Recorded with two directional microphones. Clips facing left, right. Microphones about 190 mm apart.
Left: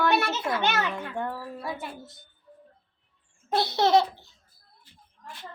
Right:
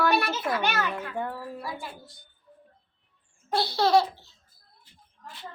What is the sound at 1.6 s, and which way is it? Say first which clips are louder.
Laughter: left 2 dB; 25° left (ahead or behind).